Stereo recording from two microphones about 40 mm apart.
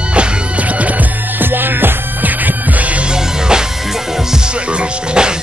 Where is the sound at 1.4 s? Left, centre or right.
Right.